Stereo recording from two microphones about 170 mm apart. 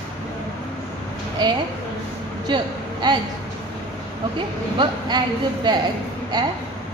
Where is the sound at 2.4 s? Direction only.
25° right (ahead or behind).